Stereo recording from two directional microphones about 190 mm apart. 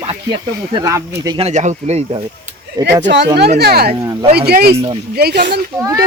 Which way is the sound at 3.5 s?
55° right (ahead or behind).